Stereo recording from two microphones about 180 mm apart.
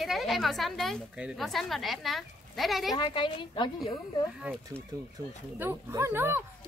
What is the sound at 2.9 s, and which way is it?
Speech, 25° left (ahead or behind).